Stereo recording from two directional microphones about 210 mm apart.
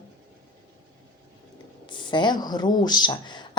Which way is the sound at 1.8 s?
20° left (ahead or behind).